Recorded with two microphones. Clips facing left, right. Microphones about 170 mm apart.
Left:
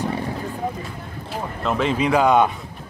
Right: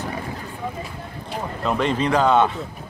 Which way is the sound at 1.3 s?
Centre (ahead or behind).